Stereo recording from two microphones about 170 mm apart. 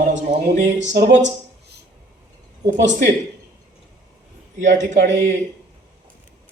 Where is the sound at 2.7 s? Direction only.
50° right (ahead or behind).